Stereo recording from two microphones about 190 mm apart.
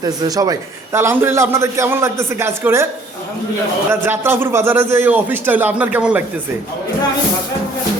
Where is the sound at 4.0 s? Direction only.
10° right (ahead or behind).